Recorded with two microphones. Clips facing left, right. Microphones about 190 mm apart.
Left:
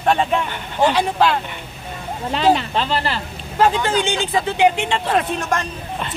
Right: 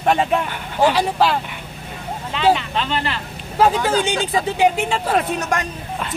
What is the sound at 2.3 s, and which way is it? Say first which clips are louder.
Speech: left 1 dB; 35° left (ahead or behind).